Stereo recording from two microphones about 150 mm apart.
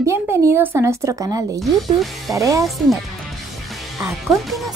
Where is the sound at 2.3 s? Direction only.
20° right (ahead or behind).